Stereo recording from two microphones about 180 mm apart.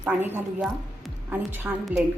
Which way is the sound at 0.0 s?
10° right (ahead or behind).